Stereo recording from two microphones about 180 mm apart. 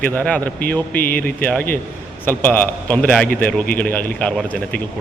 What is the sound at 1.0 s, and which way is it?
Speech, 55° left (ahead or behind).